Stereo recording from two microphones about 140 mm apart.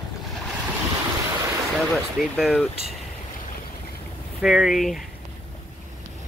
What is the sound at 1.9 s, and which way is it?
Speech, centre (ahead or behind).